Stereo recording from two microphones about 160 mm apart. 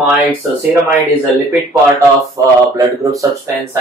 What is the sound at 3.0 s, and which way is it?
Speech, 20° right (ahead or behind).